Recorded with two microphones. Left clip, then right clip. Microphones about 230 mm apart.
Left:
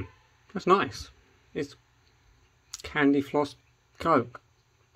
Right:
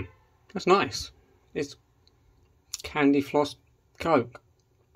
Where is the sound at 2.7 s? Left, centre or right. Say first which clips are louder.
Right 1 dB; centre.